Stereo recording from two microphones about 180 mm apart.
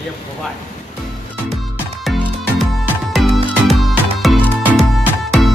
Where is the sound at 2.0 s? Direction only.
Centre (ahead or behind).